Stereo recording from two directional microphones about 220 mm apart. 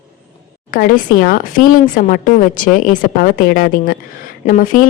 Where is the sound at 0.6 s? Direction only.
40° left (ahead or behind).